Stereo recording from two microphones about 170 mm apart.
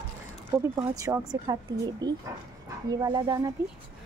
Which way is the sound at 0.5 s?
25° right (ahead or behind).